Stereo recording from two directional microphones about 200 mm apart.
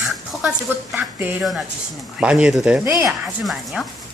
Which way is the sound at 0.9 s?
5° right (ahead or behind).